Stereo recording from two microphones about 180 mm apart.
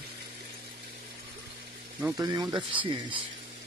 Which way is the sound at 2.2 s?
20° right (ahead or behind).